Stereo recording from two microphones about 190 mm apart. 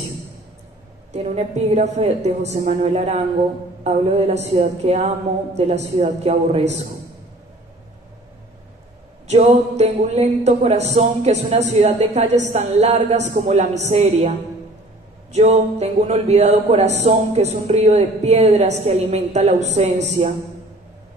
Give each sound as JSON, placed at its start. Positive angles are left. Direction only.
{"t": 1.1, "sound": "speech", "side_deg": -35}
{"t": 9.3, "sound": "speech", "side_deg": -35}
{"t": 15.3, "sound": "speech", "side_deg": -35}